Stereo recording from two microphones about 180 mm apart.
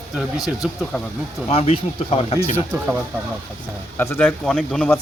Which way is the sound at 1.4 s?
30° left (ahead or behind).